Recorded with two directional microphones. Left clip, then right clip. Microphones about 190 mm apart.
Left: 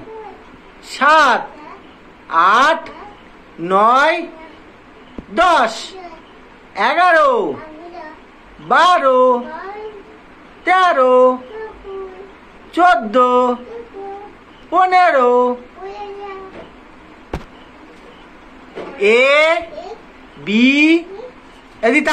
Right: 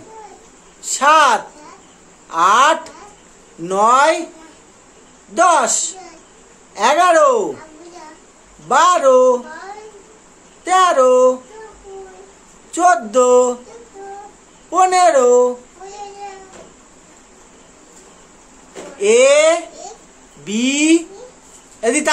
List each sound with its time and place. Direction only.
0.9 s speech: 25° right (ahead or behind)
5.3 s a woman's voice: 20° right (ahead or behind)
8.6 s speech: 20° right (ahead or behind)
10.6 s speech: 20° right (ahead or behind)
12.7 s speech: 20° right (ahead or behind)
14.7 s speech: 20° right (ahead or behind)
18.9 s speech: 20° right (ahead or behind)